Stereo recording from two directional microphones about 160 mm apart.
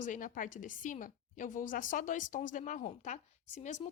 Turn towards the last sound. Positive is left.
turn(degrees=45)  # may be behind; listen again after turning